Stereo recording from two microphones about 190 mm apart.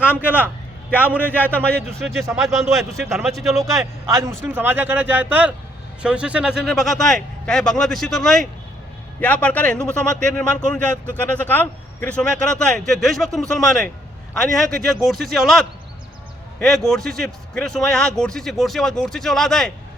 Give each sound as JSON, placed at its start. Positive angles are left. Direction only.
{"t": 0.2, "sound": "a man's voice", "side_deg": -10}
{"t": 1.2, "sound": "a man's voice", "side_deg": 10}
{"t": 3.8, "sound": "a man's voice", "side_deg": -15}